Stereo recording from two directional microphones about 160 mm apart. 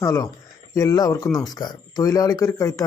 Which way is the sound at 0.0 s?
20° left (ahead or behind).